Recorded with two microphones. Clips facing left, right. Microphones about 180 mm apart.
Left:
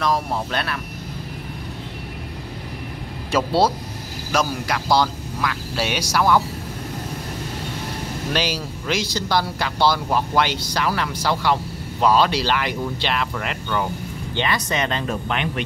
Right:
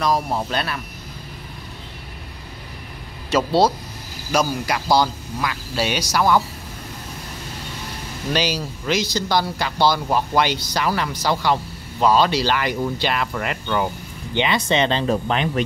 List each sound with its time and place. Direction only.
0.0 s speech: centre (ahead or behind)
3.3 s speech: 5° left (ahead or behind)
8.3 s speech: 5° left (ahead or behind)
14.3 s speech: 20° right (ahead or behind)